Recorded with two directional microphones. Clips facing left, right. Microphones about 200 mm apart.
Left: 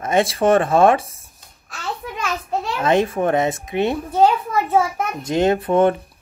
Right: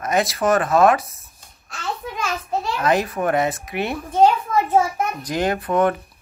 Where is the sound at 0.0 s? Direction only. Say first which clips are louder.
Left 3 dB; 30° left (ahead or behind).